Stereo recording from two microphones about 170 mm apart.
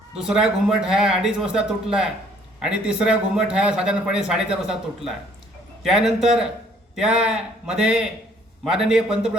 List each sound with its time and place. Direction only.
0.2 s a man's voice: 5° right (ahead or behind)